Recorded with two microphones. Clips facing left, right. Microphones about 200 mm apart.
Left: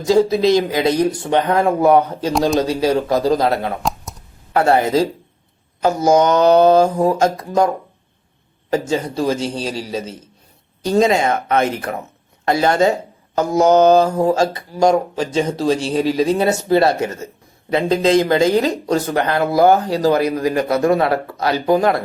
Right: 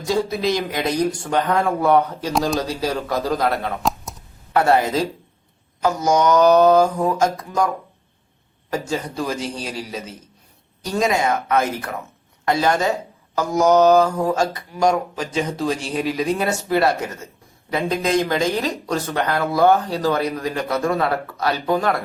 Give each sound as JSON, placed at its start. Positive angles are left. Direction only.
{"t": 0.0, "sound": "speech", "side_deg": 25}
{"t": 8.7, "sound": "speech", "side_deg": 30}